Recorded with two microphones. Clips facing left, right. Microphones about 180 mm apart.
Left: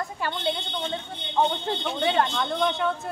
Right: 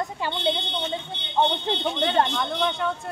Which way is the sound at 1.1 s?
75° right (ahead or behind).